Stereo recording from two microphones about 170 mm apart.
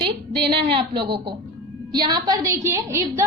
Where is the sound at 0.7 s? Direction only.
30° right (ahead or behind).